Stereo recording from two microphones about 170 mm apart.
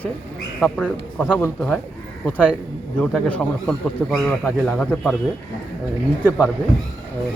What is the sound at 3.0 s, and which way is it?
A man's voice, 5° left (ahead or behind).